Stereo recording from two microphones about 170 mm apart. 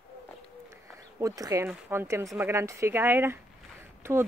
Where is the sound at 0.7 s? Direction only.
15° right (ahead or behind).